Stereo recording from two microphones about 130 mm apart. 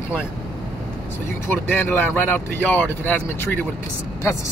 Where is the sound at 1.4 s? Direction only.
15° left (ahead or behind).